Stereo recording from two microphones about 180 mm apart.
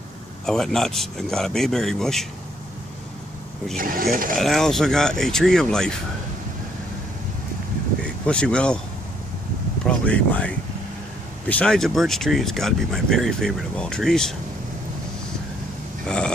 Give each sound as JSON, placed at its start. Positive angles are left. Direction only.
{"t": 0.5, "sound": "speech", "side_deg": 5}
{"t": 3.7, "sound": "speech", "side_deg": -50}
{"t": 4.4, "sound": "speech", "side_deg": 0}
{"t": 8.0, "sound": "speech", "side_deg": 5}
{"t": 9.8, "sound": "speech", "side_deg": 5}